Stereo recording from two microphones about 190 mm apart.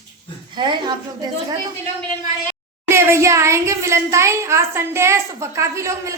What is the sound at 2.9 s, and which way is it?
A child's voice, 15° right (ahead or behind).